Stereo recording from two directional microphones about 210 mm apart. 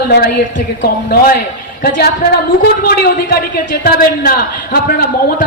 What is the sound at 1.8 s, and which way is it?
A woman's voice, 45° left (ahead or behind).